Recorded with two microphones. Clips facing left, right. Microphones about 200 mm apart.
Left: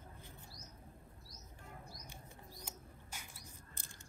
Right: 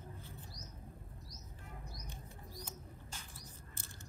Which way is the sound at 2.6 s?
10° left (ahead or behind).